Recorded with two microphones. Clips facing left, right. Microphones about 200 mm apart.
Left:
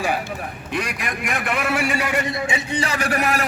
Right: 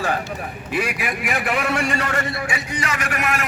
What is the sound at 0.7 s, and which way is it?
A man's voice, 5° right (ahead or behind).